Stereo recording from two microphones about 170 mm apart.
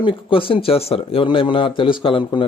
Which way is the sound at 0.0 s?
30° left (ahead or behind).